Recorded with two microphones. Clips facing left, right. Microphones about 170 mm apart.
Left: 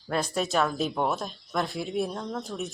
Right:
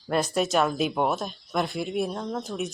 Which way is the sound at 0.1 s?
5° right (ahead or behind).